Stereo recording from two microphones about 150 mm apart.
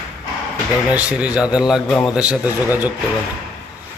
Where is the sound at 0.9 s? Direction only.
10° right (ahead or behind).